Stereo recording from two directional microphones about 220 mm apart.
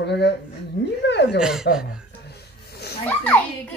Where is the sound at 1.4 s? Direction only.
5° right (ahead or behind).